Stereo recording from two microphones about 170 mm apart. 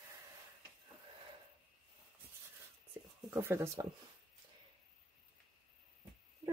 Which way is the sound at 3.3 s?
15° right (ahead or behind).